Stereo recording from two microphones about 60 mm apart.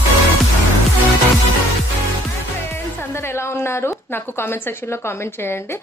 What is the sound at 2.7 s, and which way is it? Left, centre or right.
A woman's voice, left.